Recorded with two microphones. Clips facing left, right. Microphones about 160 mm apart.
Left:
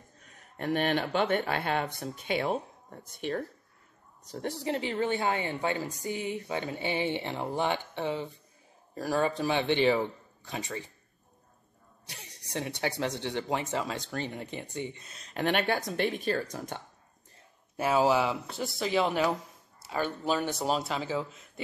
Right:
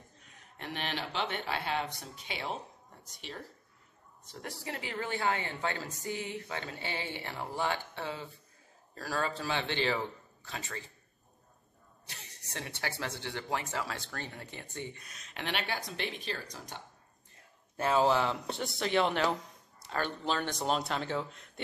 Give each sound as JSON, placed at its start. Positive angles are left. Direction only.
{"t": 0.2, "sound": "speech", "side_deg": 45}
{"t": 4.5, "sound": "a woman's voice", "side_deg": 25}
{"t": 12.1, "sound": "a woman's voice", "side_deg": 15}
{"t": 15.4, "sound": "speech", "side_deg": 50}
{"t": 17.7, "sound": "speech", "side_deg": 10}